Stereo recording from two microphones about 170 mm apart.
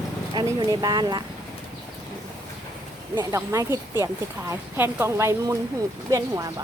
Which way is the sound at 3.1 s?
20° right (ahead or behind).